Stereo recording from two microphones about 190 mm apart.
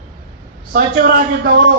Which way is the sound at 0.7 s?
55° right (ahead or behind).